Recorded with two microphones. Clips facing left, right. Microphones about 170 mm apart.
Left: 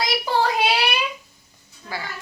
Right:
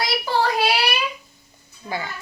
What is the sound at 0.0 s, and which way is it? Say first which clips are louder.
Child singing: even; 20° left (ahead or behind).